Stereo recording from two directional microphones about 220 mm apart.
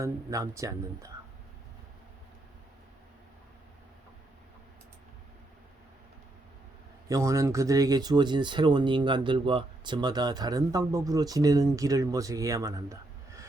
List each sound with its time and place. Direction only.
0.0 s speech: 15° right (ahead or behind)
7.1 s speech: 15° right (ahead or behind)